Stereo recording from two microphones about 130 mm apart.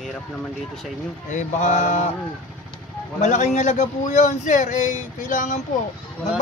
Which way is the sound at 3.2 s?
70° left (ahead or behind).